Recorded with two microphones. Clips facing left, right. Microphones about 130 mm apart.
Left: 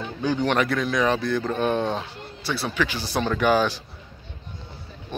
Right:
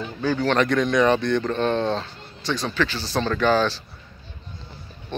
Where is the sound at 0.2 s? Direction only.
15° left (ahead or behind).